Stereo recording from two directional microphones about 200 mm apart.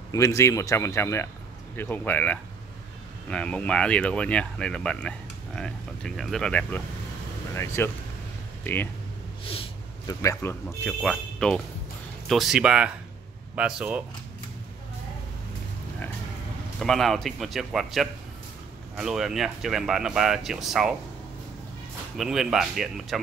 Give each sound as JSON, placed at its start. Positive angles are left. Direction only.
{"t": 0.1, "sound": "speech", "side_deg": 15}
{"t": 9.5, "sound": "a sound", "side_deg": 25}
{"t": 10.2, "sound": "speech", "side_deg": 15}
{"t": 16.8, "sound": "speech", "side_deg": 0}
{"t": 22.1, "sound": "speech", "side_deg": 0}